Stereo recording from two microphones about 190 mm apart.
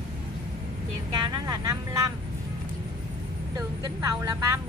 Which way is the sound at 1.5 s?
20° right (ahead or behind).